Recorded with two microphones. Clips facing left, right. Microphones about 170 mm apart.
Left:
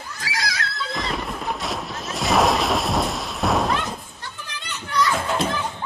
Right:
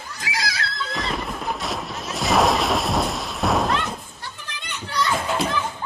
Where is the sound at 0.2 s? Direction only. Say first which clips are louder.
Even; 25° right (ahead or behind).